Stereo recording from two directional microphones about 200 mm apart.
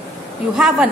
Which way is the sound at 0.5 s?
Centre (ahead or behind).